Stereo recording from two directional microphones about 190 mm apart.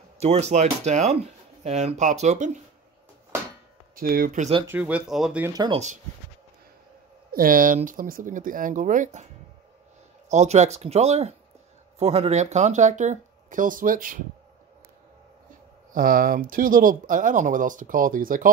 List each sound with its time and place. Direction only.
0.2 s speech: 35° right (ahead or behind)
3.9 s speech: 50° right (ahead or behind)
4.6 s speech: 10° right (ahead or behind)
5.5 s speech: 20° right (ahead or behind)
7.3 s speech: 45° right (ahead or behind)
10.3 s speech: 35° right (ahead or behind)
15.9 s speech: 45° right (ahead or behind)